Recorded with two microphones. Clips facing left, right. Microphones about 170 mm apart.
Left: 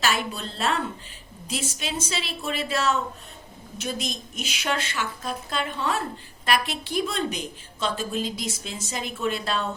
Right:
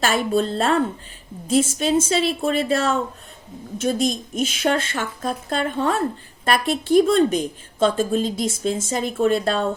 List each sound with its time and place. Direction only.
0.0 s a woman's voice: 50° right (ahead or behind)